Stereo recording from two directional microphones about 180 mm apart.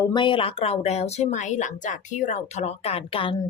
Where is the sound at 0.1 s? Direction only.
25° left (ahead or behind).